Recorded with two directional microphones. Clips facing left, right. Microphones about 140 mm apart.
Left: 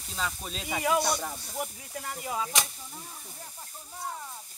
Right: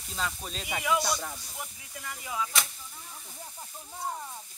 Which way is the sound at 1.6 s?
40° left (ahead or behind).